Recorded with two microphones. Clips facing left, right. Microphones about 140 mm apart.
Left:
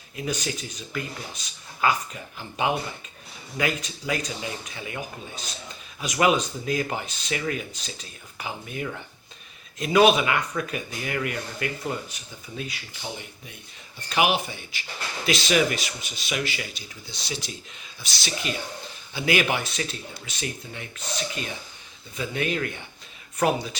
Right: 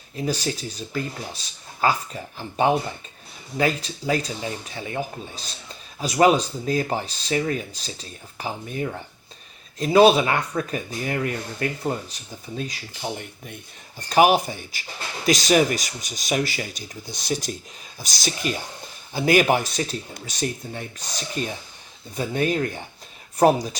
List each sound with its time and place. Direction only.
0.2 s speech: 35° right (ahead or behind)
13.1 s speech: 50° right (ahead or behind)
14.1 s speech: 40° right (ahead or behind)